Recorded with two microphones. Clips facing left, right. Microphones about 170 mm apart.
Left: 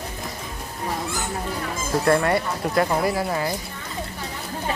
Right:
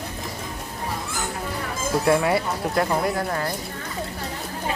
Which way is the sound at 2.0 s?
5° right (ahead or behind).